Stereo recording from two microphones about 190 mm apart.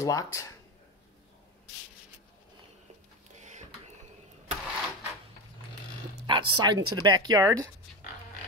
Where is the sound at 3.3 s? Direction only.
40° right (ahead or behind).